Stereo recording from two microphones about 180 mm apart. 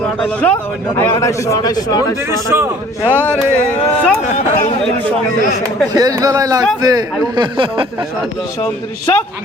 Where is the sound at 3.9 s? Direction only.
10° left (ahead or behind).